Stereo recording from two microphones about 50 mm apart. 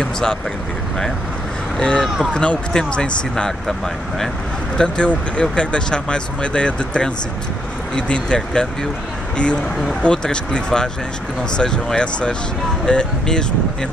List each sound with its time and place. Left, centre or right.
0.0 s speech: centre
1.8 s speech: centre
4.7 s speech: centre
10.0 s speech: centre